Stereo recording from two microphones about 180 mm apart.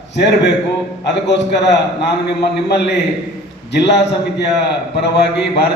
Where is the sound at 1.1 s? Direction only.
75° left (ahead or behind).